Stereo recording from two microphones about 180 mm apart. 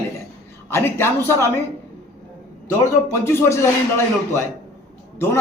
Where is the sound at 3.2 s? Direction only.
15° left (ahead or behind).